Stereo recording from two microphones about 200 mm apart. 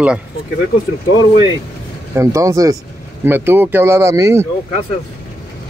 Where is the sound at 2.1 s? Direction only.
15° right (ahead or behind).